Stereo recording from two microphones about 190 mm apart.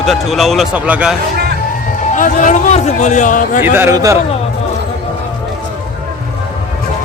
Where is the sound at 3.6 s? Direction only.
10° right (ahead or behind).